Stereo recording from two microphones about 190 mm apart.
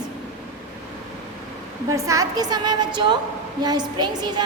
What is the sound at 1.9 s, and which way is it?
A woman's voice, 15° right (ahead or behind).